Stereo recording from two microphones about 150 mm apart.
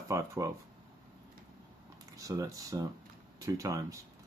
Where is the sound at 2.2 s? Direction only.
20° right (ahead or behind).